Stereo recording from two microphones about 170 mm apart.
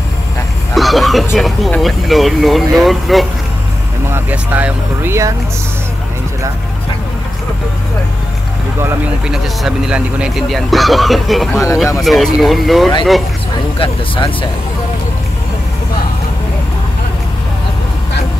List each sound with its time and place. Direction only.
0.7 s vehicle: centre (ahead or behind)
1.3 s speech: centre (ahead or behind)
9.3 s speech: 5° right (ahead or behind)
11.5 s speech: 20° left (ahead or behind)
12.0 s speech: centre (ahead or behind)
13.7 s speech: 30° left (ahead or behind)